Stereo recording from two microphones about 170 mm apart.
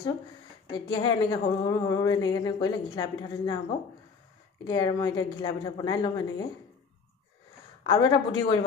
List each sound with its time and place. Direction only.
0.7 s a woman's voice: 25° left (ahead or behind)
4.6 s a woman's voice: 25° left (ahead or behind)
7.8 s a woman's voice: 25° left (ahead or behind)